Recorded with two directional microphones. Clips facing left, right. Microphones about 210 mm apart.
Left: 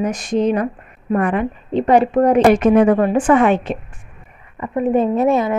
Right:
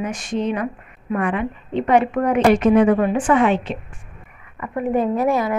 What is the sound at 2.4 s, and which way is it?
A woman's voice, 50° left (ahead or behind).